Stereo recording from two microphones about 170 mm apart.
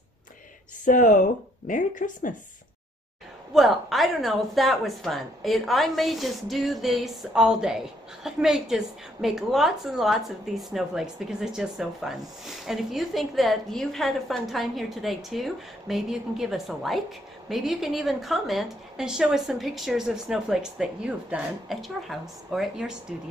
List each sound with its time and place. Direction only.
0.8 s speech: 50° left (ahead or behind)
3.5 s speech: centre (ahead or behind)